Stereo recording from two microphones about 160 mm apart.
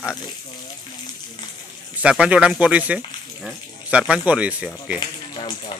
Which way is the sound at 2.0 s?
10° right (ahead or behind).